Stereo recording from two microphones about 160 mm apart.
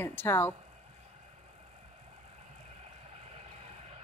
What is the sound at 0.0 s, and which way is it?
Speech, 15° left (ahead or behind).